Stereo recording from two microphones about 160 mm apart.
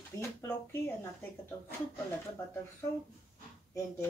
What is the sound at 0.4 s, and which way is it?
Speech, 15° left (ahead or behind).